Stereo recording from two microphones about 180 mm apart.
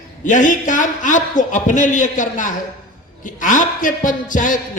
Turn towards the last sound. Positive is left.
turn(degrees=45)  # may be behind; listen again after turning